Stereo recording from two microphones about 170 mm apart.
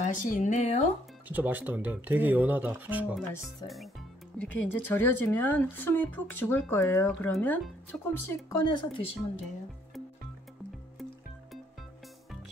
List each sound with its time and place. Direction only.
0.0 s speech: 50° left (ahead or behind)
1.3 s speech: 10° right (ahead or behind); by 8.1 s 5° left (ahead or behind)
8.5 s speech: 25° left (ahead or behind)